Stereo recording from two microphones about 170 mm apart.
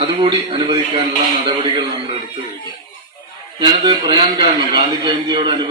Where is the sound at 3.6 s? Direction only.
25° right (ahead or behind).